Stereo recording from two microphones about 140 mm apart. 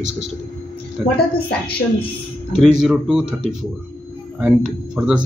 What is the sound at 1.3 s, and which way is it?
Speech, 40° left (ahead or behind).